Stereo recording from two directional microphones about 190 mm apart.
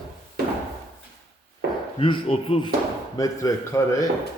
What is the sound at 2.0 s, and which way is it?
Speech, 30° left (ahead or behind).